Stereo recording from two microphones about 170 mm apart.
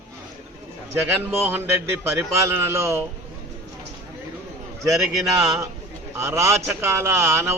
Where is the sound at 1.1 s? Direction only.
10° right (ahead or behind).